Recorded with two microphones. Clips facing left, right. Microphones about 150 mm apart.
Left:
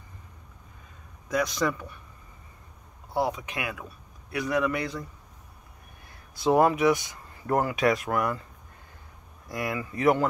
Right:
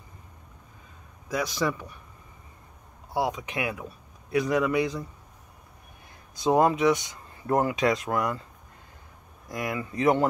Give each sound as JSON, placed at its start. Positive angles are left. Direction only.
{"t": 1.3, "sound": "speech", "side_deg": -10}
{"t": 3.1, "sound": "speech", "side_deg": -15}
{"t": 6.3, "sound": "speech", "side_deg": -20}
{"t": 9.5, "sound": "speech", "side_deg": -20}